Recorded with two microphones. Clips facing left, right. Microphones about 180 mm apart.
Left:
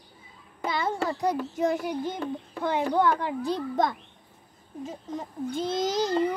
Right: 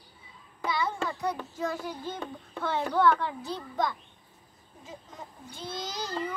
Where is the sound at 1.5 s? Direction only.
20° left (ahead or behind).